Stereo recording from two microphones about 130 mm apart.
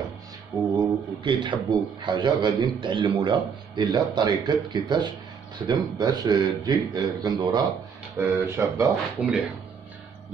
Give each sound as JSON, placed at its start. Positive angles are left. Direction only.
{"t": 0.7, "sound": "a man's voice", "side_deg": -35}